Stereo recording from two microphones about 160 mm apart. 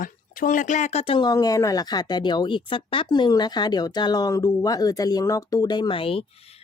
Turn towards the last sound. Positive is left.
turn(degrees=35)  # may be behind; listen again after turning